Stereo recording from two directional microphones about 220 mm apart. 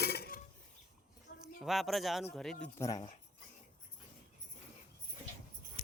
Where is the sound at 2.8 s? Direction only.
20° left (ahead or behind).